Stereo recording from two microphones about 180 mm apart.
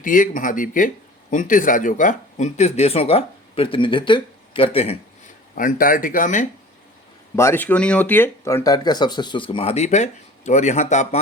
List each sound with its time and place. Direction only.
0.0 s speech: 45° left (ahead or behind)
5.5 s speech: 50° left (ahead or behind)
7.3 s speech: 15° left (ahead or behind); by 11.2 s 40° left (ahead or behind)